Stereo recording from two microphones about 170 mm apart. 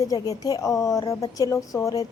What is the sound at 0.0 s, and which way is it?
A woman's voice, 20° left (ahead or behind).